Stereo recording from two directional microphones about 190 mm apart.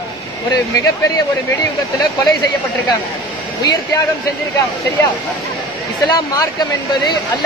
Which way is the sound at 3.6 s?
20° left (ahead or behind).